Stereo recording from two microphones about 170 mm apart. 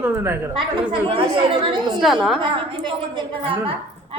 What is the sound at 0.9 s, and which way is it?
A woman's voice, 30° right (ahead or behind).